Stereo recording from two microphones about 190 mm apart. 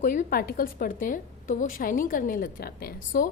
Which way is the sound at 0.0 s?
45° left (ahead or behind).